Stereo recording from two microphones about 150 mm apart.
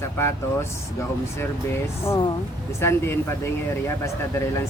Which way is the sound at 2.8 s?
15° left (ahead or behind).